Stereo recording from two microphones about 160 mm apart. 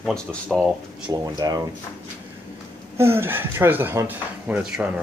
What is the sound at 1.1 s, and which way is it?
Speech, 25° right (ahead or behind).